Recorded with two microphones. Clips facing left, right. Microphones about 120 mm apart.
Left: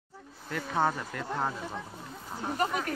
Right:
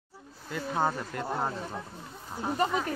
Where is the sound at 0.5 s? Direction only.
10° right (ahead or behind).